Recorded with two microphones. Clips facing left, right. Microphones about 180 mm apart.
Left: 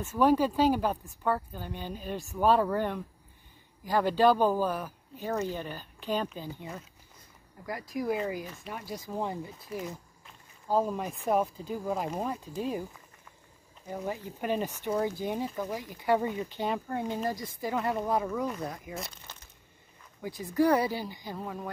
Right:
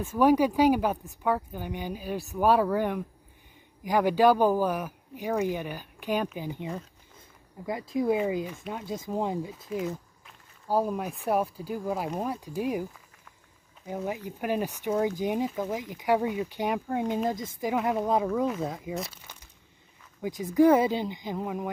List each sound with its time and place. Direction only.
0.0 s speech: 15° right (ahead or behind)
13.9 s speech: 15° right (ahead or behind)
19.3 s a sound: 10° right (ahead or behind)
20.2 s speech: 15° right (ahead or behind)